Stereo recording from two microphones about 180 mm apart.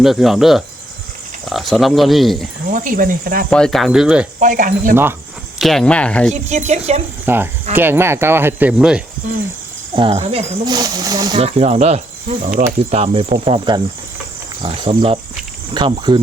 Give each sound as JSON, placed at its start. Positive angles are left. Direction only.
{"t": 0.0, "sound": "speech", "side_deg": 0}
{"t": 2.6, "sound": "speech", "side_deg": -50}
{"t": 3.5, "sound": "speech", "side_deg": 5}
{"t": 4.4, "sound": "speech", "side_deg": -50}
{"t": 5.5, "sound": "speech", "side_deg": 0}
{"t": 6.5, "sound": "speech", "side_deg": -40}
{"t": 7.3, "sound": "speech", "side_deg": -10}
{"t": 9.9, "sound": "speech", "side_deg": -30}
{"t": 10.7, "sound": "speech", "side_deg": -20}
{"t": 11.3, "sound": "speech", "side_deg": -35}